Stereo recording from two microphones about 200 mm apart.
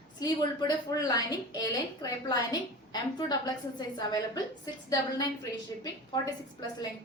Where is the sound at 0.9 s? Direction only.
20° left (ahead or behind).